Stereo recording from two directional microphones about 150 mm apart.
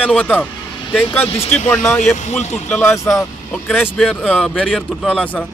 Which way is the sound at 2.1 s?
50° left (ahead or behind).